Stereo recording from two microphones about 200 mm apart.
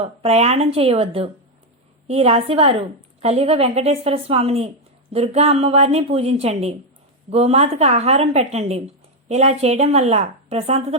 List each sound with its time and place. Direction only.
0.0 s a woman's voice: 30° right (ahead or behind)